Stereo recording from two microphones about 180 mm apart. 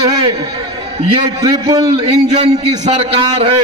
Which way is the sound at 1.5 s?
20° right (ahead or behind).